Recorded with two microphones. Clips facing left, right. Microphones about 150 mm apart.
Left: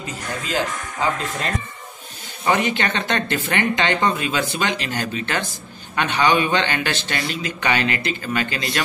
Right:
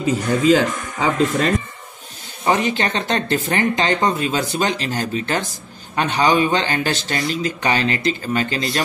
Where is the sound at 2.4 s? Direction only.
35° right (ahead or behind).